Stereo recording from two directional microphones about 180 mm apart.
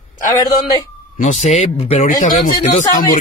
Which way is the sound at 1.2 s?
40° left (ahead or behind).